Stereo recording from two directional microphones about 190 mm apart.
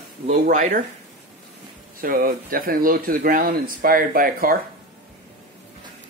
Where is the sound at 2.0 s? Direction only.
50° right (ahead or behind).